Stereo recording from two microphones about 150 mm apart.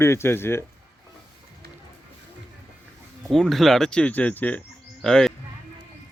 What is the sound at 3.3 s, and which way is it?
Speech, 5° left (ahead or behind).